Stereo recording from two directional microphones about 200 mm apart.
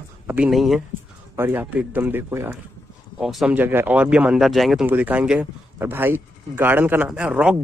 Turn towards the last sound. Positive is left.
turn(degrees=-5)  # may be behind; listen again after turning